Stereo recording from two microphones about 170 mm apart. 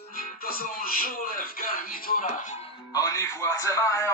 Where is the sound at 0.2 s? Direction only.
55° left (ahead or behind).